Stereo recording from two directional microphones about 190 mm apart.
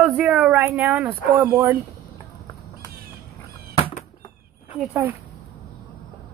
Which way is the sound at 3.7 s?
25° left (ahead or behind).